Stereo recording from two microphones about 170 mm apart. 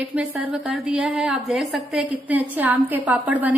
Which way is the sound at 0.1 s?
5° right (ahead or behind).